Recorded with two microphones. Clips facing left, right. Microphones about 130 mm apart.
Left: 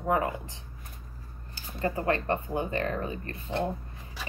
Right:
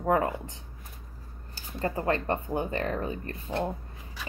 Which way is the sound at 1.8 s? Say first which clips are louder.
Even; 30° right (ahead or behind).